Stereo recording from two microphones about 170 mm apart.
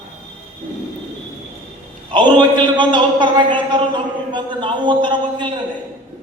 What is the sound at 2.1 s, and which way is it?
Speech, 25° right (ahead or behind).